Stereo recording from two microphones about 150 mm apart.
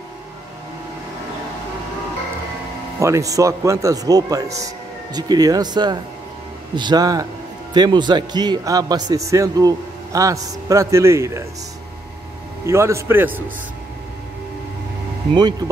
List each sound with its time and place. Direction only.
3.0 s a man's voice: 20° right (ahead or behind)
12.6 s a man's voice: 20° right (ahead or behind)